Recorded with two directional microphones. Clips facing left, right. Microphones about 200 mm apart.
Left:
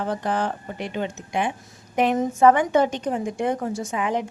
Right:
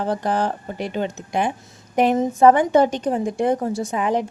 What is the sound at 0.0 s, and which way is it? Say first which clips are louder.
A woman's voice: right 3 dB; 35° right (ahead or behind).